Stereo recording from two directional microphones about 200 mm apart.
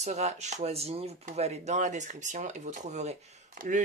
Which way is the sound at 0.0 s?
35° right (ahead or behind).